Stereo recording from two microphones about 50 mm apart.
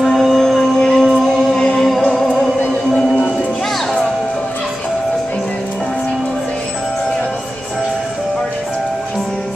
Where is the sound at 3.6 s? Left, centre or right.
Centre.